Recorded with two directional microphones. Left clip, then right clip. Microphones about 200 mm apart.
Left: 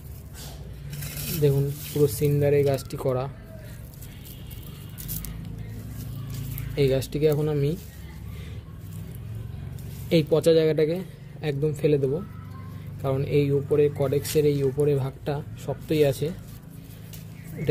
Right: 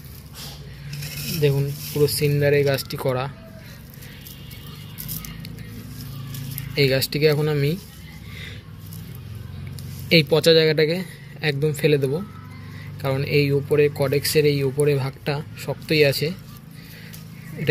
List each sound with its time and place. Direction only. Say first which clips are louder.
1.5 s speech: right 1 dB; 10° left (ahead or behind)
6.7 s speech: right 4 dB; centre (ahead or behind)
10.0 s speech: right 4 dB; 5° left (ahead or behind)